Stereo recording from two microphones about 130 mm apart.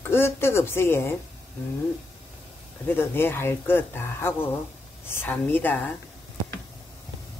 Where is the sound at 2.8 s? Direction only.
15° left (ahead or behind).